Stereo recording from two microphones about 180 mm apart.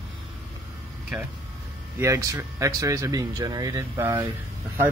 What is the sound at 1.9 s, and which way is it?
Speech, 15° right (ahead or behind).